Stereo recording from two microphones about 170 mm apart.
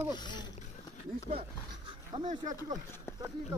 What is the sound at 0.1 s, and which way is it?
Speech, 25° left (ahead or behind).